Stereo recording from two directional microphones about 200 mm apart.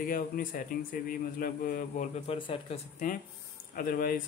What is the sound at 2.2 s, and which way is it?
Speech, 25° left (ahead or behind).